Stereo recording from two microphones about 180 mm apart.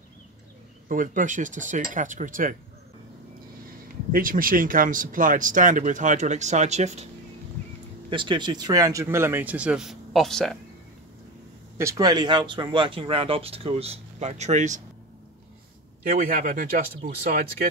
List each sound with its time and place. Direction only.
0.8 s speech: 45° right (ahead or behind)
4.1 s speech: 50° right (ahead or behind)
8.1 s speech: 25° right (ahead or behind); by 10.6 s centre (ahead or behind)
11.8 s speech: 20° right (ahead or behind); by 14.8 s 40° right (ahead or behind)
16.1 s speech: 50° right (ahead or behind)